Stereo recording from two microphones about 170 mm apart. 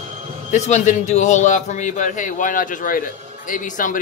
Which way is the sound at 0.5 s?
45° left (ahead or behind).